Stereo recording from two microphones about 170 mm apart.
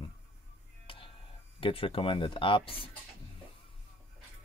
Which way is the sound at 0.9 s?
30° left (ahead or behind).